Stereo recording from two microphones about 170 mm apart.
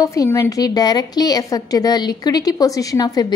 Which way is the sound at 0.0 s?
20° left (ahead or behind).